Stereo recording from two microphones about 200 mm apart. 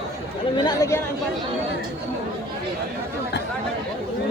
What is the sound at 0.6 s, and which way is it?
Speech, 15° left (ahead or behind).